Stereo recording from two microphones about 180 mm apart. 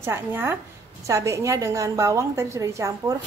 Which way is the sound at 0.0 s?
10° right (ahead or behind).